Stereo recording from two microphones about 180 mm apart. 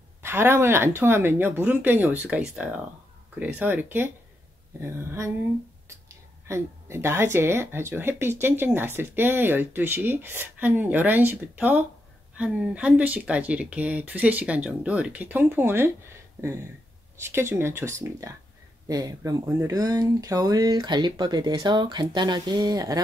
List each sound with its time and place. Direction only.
0.2 s speech: 15° right (ahead or behind)
17.2 s speech: 15° right (ahead or behind)